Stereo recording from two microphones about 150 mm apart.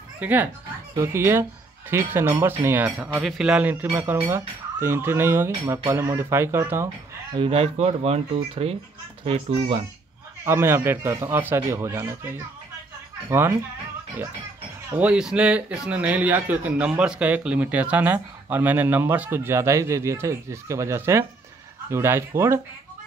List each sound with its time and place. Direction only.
0.2 s speech: 10° right (ahead or behind)
7.3 s a child's voice: 40° right (ahead or behind)
10.4 s speech: 15° right (ahead or behind)
15.0 s speech: 5° right (ahead or behind)